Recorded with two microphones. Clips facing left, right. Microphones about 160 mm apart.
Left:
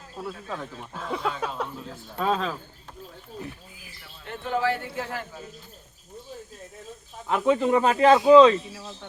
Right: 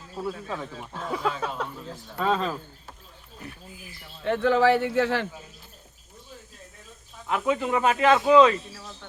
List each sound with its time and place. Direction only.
0.2 s speech: 5° right (ahead or behind)
4.2 s a man's voice: 90° right
7.3 s speech: 30° left (ahead or behind)